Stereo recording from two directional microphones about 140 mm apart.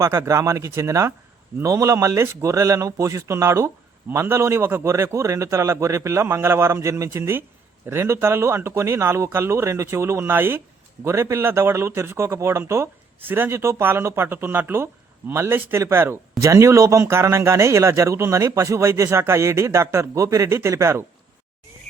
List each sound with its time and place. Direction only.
0.0 s a man's voice: 20° right (ahead or behind)